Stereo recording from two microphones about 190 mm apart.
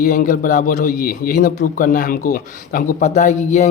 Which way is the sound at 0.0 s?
45° left (ahead or behind).